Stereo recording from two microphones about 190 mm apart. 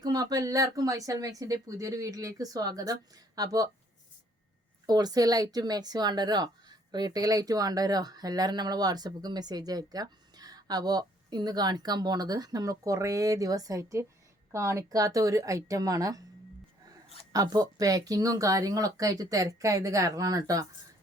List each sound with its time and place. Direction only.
0.0 s speech: 20° right (ahead or behind)
4.9 s speech: 20° right (ahead or behind)
17.3 s speech: 20° right (ahead or behind)